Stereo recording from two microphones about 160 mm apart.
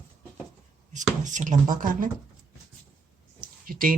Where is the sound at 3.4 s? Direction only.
60° right (ahead or behind).